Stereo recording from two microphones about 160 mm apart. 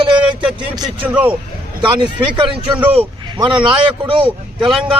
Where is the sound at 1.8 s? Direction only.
30° right (ahead or behind).